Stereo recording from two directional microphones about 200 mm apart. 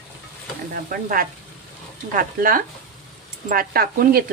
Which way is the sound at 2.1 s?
40° right (ahead or behind).